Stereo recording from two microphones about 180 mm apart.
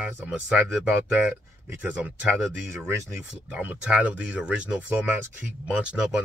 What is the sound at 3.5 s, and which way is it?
Speech, 10° right (ahead or behind).